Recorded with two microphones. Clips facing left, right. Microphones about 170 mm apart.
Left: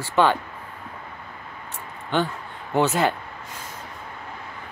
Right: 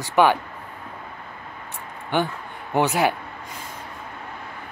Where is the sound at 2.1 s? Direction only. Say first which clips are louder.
Even; 10° right (ahead or behind).